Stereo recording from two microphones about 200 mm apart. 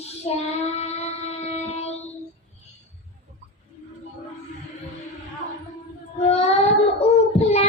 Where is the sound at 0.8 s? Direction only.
30° left (ahead or behind).